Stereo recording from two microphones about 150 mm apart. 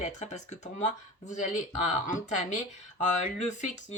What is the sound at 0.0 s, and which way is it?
Speech, 50° left (ahead or behind).